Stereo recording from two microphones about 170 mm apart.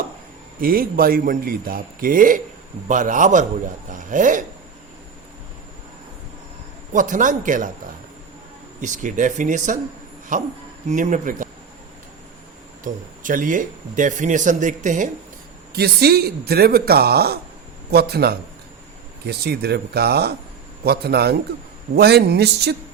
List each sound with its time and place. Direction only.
0.6 s a man's voice: 60° right (ahead or behind)
6.9 s speech: 50° right (ahead or behind)
8.8 s speech: 45° right (ahead or behind)
12.8 s speech: 50° right (ahead or behind)
15.7 s speech: 70° right (ahead or behind)